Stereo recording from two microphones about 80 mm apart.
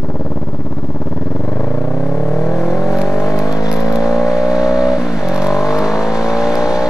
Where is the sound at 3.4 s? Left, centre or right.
Left.